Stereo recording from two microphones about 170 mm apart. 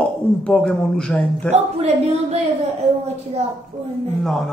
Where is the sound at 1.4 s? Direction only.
40° right (ahead or behind).